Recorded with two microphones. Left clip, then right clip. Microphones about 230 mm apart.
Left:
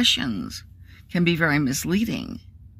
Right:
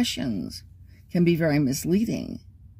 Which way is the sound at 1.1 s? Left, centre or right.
Centre.